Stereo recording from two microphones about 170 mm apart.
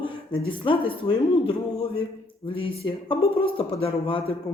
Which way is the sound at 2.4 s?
30° left (ahead or behind).